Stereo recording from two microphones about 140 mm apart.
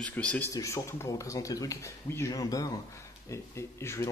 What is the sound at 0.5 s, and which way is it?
Speech, 20° left (ahead or behind).